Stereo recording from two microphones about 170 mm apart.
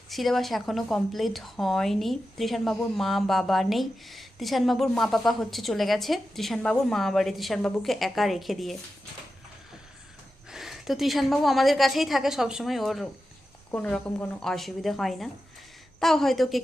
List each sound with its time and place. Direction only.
0.1 s a woman's voice: centre (ahead or behind)
10.5 s a woman's voice: centre (ahead or behind)